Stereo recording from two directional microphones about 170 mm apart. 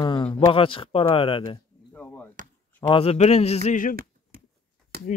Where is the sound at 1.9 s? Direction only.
10° left (ahead or behind).